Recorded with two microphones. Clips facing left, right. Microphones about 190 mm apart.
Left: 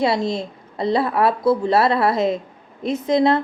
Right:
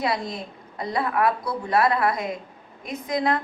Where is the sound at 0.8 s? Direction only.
30° left (ahead or behind).